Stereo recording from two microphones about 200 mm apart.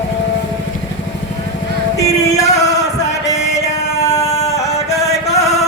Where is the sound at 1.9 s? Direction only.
15° left (ahead or behind).